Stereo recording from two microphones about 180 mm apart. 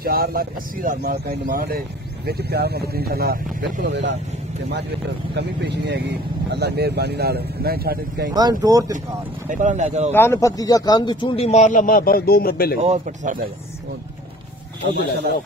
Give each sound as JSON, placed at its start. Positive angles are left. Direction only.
{"t": 0.0, "sound": "speech", "side_deg": -55}
{"t": 5.3, "sound": "speech", "side_deg": -70}
{"t": 8.3, "sound": "speech", "side_deg": -20}
{"t": 9.5, "sound": "speech", "side_deg": -45}
{"t": 10.1, "sound": "speech", "side_deg": 15}
{"t": 12.8, "sound": "speech", "side_deg": -40}
{"t": 14.9, "sound": "speech", "side_deg": -70}